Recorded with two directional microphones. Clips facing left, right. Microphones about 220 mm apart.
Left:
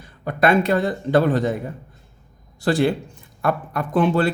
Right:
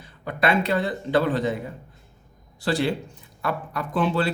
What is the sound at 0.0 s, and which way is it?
Speech, 45° left (ahead or behind).